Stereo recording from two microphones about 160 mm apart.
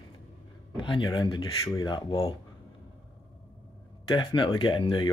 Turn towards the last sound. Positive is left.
turn(degrees=30)  # may be behind; listen again after turning